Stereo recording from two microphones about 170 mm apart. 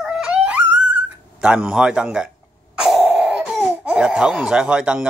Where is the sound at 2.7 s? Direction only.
5° right (ahead or behind).